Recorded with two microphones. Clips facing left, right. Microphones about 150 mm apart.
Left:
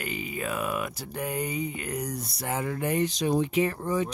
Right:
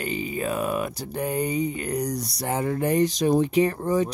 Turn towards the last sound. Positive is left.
turn(degrees=-40)  # may be behind; listen again after turning